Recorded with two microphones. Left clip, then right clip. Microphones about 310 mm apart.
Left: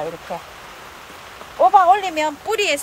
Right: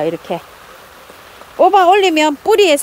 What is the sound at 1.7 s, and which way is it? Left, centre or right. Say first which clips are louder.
Speech: right 4 dB; right.